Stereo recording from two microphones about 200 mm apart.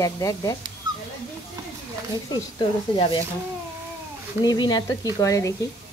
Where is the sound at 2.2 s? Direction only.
20° left (ahead or behind).